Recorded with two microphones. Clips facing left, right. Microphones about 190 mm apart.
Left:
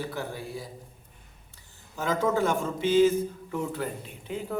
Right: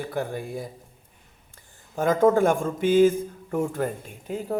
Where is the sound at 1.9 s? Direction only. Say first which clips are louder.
Right 7 dB; 50° right (ahead or behind).